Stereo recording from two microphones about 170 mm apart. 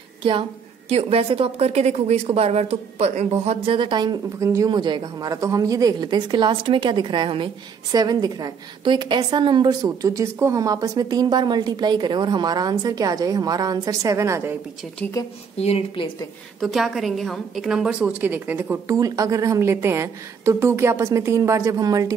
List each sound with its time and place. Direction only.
0.2 s a woman's voice: 30° right (ahead or behind)
15.0 s a woman's voice: 15° left (ahead or behind)
15.5 s a woman's voice: 35° left (ahead or behind)
16.5 s a woman's voice: centre (ahead or behind); by 22.1 s 20° right (ahead or behind)